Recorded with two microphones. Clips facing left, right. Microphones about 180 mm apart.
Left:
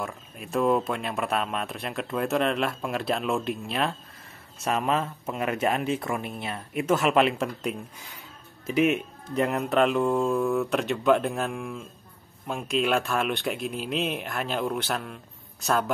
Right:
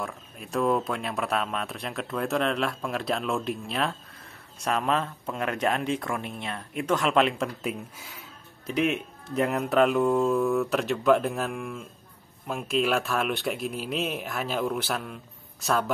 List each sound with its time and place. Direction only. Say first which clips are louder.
0.0 s speech: left 1 dB; centre (ahead or behind)